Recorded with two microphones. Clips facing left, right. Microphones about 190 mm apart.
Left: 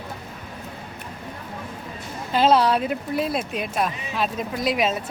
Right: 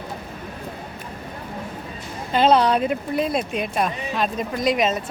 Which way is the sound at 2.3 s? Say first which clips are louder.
Right 1 dB; 5° left (ahead or behind).